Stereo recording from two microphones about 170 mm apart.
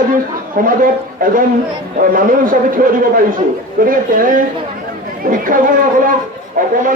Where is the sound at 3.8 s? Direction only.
55° right (ahead or behind).